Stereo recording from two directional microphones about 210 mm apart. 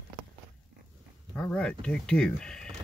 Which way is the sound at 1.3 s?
5° left (ahead or behind).